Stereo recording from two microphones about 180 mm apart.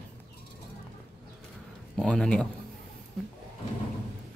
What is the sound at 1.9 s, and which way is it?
Speech, 5° left (ahead or behind).